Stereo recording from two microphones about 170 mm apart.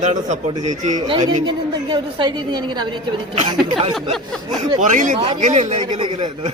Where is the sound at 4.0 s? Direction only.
Centre (ahead or behind).